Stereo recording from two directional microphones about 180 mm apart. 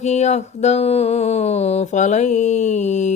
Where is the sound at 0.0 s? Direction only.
40° left (ahead or behind).